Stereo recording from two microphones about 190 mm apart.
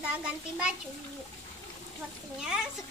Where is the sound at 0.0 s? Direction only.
5° right (ahead or behind).